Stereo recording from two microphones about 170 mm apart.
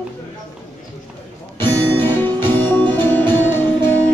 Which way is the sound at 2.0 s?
10° left (ahead or behind).